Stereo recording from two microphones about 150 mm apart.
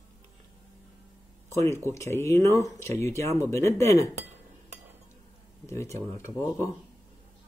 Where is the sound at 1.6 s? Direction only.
15° left (ahead or behind).